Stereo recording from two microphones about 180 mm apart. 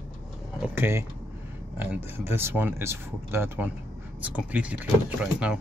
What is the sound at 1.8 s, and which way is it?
Speech, 10° right (ahead or behind).